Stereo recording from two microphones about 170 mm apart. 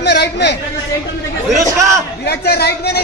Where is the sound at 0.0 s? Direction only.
85° left.